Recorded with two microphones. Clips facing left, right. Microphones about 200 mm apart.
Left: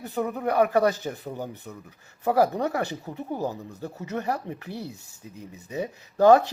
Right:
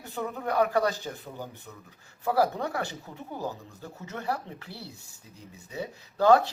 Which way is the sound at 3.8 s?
40° left (ahead or behind).